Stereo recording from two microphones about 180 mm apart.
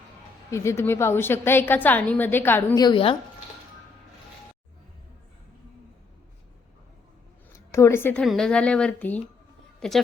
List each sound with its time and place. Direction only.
0.5 s a woman's voice: 15° left (ahead or behind)
2.8 s speech: 30° left (ahead or behind)
7.7 s a woman's voice: 15° left (ahead or behind)